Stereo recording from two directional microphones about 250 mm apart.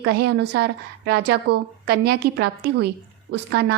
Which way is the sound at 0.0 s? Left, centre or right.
Right.